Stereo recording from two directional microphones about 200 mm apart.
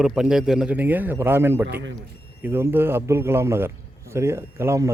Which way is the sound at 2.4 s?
10° right (ahead or behind).